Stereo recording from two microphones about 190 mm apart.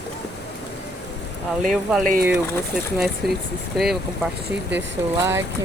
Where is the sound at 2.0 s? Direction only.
45° right (ahead or behind).